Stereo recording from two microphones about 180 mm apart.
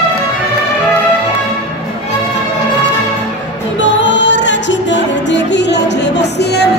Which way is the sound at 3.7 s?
90° left.